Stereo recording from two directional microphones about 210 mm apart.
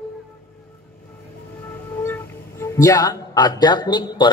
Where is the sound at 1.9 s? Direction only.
10° left (ahead or behind).